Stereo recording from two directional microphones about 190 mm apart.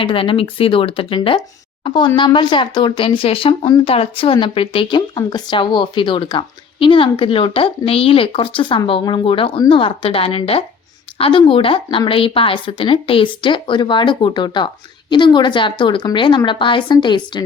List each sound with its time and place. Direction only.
0.0 s speech: 30° left (ahead or behind)